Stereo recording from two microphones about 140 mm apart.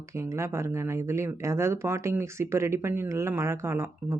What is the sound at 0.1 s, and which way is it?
Speech, 20° right (ahead or behind).